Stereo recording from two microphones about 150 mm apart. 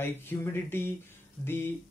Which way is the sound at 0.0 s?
15° left (ahead or behind).